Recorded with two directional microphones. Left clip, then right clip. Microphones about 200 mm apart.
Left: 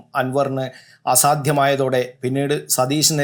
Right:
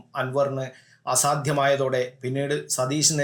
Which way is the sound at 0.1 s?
15° left (ahead or behind).